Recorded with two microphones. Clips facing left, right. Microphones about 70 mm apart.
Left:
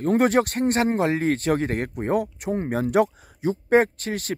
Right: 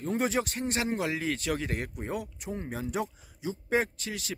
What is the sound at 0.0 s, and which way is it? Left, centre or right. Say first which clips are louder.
Speech: left 10 dB; left.